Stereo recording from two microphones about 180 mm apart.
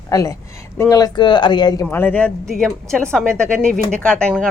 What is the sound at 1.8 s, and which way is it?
Speech, 10° left (ahead or behind).